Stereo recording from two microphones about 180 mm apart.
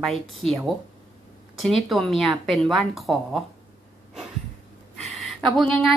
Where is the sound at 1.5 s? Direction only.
Centre (ahead or behind).